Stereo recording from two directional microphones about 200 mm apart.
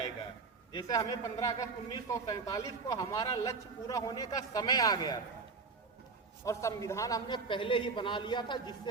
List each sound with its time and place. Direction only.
0.7 s a man's voice: 20° left (ahead or behind)
6.4 s a man's voice: 15° left (ahead or behind)